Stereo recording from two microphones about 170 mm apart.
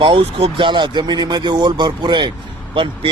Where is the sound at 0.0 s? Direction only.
30° right (ahead or behind).